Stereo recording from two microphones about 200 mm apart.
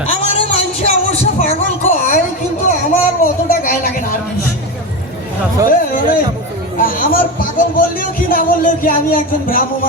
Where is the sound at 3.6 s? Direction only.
45° left (ahead or behind).